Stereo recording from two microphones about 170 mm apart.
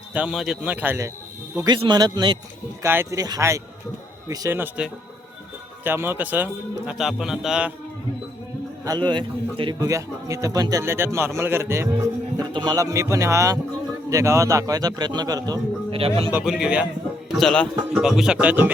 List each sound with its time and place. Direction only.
0.1 s speech: 5° right (ahead or behind)
1.5 s a man's voice: 25° right (ahead or behind)
2.8 s speech: 15° right (ahead or behind)
8.8 s a man's voice: 25° right (ahead or behind)
15.9 s speech: 35° right (ahead or behind)
16.4 s speech: 5° right (ahead or behind)